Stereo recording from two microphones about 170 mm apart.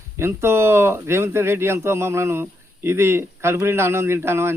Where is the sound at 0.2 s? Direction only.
15° right (ahead or behind).